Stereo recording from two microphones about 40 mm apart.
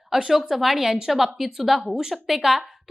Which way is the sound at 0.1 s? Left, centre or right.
Centre.